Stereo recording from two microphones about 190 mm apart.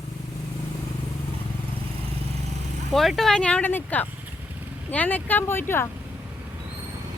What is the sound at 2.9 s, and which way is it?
Speech, centre (ahead or behind).